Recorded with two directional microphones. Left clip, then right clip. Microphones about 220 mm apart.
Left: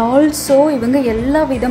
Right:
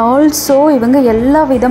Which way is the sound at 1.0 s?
15° right (ahead or behind).